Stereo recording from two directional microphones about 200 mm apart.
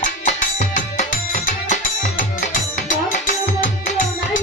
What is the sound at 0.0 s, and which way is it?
Music, 40° left (ahead or behind).